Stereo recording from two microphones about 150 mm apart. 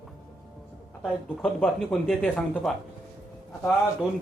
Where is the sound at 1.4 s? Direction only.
Centre (ahead or behind).